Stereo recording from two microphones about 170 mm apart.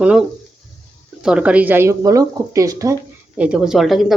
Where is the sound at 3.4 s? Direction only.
5° right (ahead or behind).